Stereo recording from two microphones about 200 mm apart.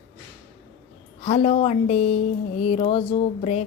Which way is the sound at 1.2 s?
30° left (ahead or behind).